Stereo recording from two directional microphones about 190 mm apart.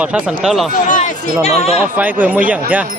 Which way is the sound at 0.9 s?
40° left (ahead or behind).